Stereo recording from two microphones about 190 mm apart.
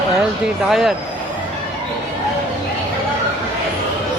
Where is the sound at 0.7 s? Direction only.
Centre (ahead or behind).